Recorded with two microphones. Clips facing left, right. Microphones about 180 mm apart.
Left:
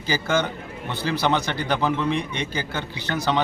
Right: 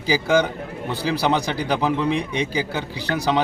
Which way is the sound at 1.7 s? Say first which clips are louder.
Right 2 dB; 5° right (ahead or behind).